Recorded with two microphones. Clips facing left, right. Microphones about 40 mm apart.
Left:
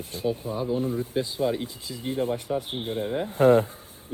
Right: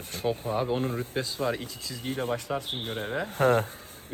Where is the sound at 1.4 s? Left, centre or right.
Right.